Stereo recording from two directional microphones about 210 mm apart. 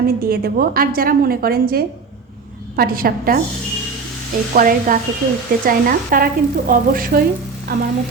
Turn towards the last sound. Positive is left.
turn(degrees=-45)  # may be behind; listen again after turning